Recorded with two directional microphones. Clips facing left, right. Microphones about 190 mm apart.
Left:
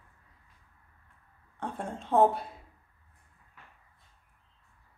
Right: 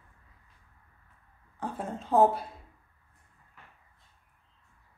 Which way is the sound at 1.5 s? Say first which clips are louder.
Right 1 dB; centre (ahead or behind).